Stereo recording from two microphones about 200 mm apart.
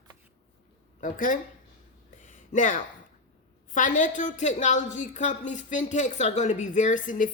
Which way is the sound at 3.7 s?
40° left (ahead or behind).